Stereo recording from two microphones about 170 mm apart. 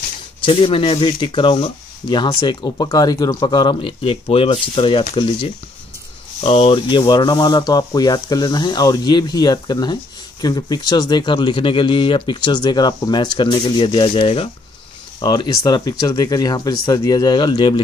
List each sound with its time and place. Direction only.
0.4 s speech: 30° left (ahead or behind)